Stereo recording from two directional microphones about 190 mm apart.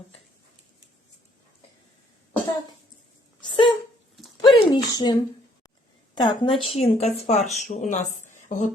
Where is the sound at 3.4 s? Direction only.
25° left (ahead or behind).